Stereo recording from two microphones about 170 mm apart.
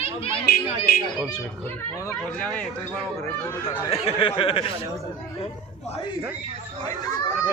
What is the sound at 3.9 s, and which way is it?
Speech, 35° left (ahead or behind).